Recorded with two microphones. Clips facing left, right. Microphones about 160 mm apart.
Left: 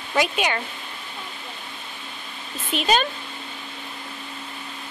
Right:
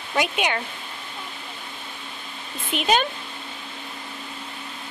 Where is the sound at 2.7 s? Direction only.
15° right (ahead or behind).